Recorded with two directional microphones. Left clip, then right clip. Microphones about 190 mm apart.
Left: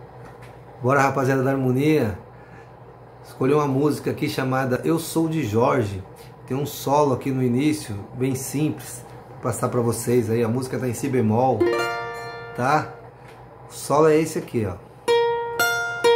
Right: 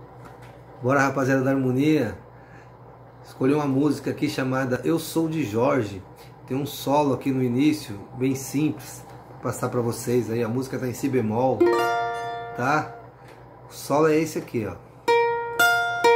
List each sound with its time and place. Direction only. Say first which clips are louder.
0.8 s speech: left 2 dB; 10° left (ahead or behind)
3.3 s speech: left 2 dB; 10° left (ahead or behind)
11.5 s music: right 1 dB; 25° right (ahead or behind)
12.5 s speech: left 3 dB; 10° left (ahead or behind)
15.7 s music: right 1 dB; 30° right (ahead or behind)